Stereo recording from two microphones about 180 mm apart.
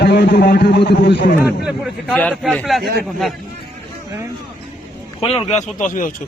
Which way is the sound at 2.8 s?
60° right (ahead or behind).